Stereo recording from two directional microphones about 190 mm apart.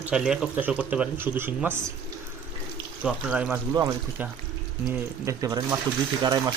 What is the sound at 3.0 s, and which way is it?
Speech, 5° right (ahead or behind).